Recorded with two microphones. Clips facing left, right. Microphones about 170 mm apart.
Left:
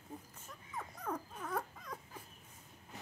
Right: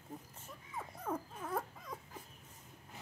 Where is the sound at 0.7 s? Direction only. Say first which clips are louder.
Right 1 dB; 5° right (ahead or behind).